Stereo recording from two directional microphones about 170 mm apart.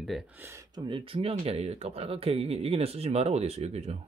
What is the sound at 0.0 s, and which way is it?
Speech, centre (ahead or behind).